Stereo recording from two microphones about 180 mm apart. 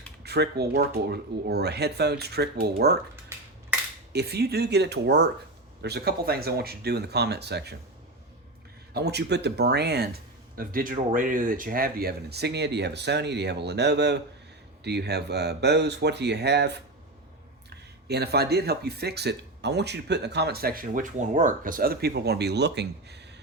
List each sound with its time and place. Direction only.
0.2 s speech: 65° right (ahead or behind)
4.1 s speech: 65° right (ahead or behind)
8.9 s speech: 65° right (ahead or behind)